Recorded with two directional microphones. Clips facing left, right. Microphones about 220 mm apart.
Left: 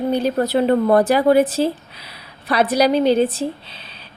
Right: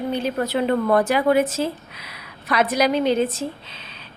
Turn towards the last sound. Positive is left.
turn(degrees=35)  # may be behind; listen again after turning